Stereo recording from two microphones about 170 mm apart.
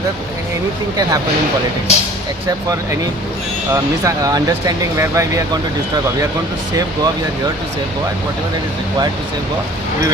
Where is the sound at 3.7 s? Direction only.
20° right (ahead or behind).